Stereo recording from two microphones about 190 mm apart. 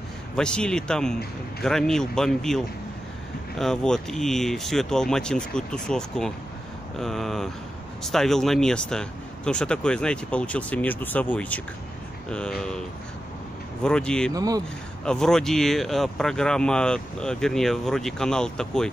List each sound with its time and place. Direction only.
0.4 s speech: 5° left (ahead or behind)
13.8 s speech: 5° left (ahead or behind)
14.3 s speech: 20° right (ahead or behind)
15.0 s speech: 5° left (ahead or behind)